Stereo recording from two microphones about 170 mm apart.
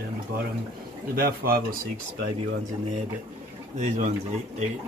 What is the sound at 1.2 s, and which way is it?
Speech, 60° right (ahead or behind).